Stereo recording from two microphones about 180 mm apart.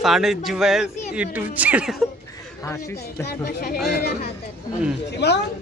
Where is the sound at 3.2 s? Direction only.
60° left (ahead or behind).